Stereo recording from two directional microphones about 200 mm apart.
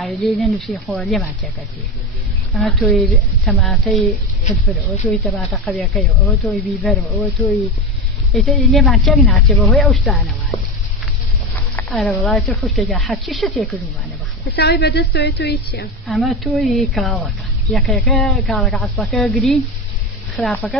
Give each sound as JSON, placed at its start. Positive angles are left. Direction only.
{"t": 0.0, "sound": "speech", "side_deg": 0}
{"t": 2.5, "sound": "speech", "side_deg": 0}
{"t": 10.5, "sound": "sizzle", "side_deg": 35}
{"t": 11.7, "sound": "a sound", "side_deg": 0}
{"t": 12.3, "sound": "speech", "side_deg": 0}
{"t": 14.4, "sound": "a woman's voice", "side_deg": 50}
{"t": 16.1, "sound": "speech", "side_deg": 0}